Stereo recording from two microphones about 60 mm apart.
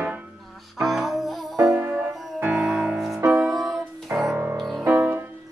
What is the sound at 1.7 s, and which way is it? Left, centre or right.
Music, right.